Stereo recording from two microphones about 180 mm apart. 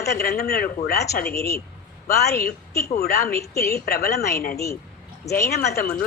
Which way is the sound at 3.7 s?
60° left (ahead or behind).